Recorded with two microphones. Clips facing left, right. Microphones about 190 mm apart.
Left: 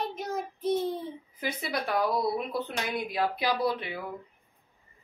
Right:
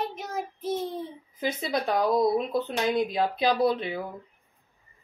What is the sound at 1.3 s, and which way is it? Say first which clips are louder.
Speech: right 5 dB; 20° right (ahead or behind).